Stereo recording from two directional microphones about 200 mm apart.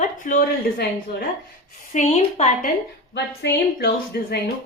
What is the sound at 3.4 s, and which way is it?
Speech, 60° left (ahead or behind).